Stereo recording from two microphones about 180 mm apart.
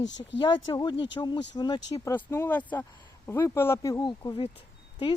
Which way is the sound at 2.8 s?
25° left (ahead or behind).